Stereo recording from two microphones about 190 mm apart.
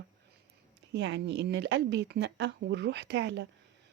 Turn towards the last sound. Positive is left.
turn(degrees=-65)  # may be behind; listen again after turning